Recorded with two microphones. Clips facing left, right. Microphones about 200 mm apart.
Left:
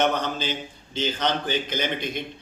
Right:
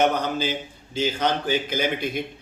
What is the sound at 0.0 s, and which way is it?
A man's voice, 10° right (ahead or behind).